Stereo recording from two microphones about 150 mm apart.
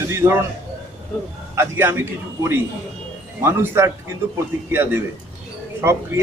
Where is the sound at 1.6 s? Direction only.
15° right (ahead or behind).